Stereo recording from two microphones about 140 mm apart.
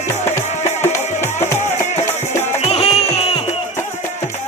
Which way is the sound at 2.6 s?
45° left (ahead or behind).